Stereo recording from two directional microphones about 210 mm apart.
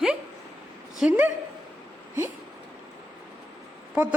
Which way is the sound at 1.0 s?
5° right (ahead or behind).